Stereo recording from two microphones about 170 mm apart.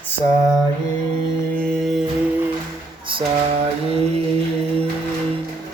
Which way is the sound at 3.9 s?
35° right (ahead or behind).